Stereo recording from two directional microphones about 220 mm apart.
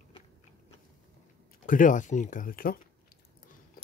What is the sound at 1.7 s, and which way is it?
Speech, 35° left (ahead or behind).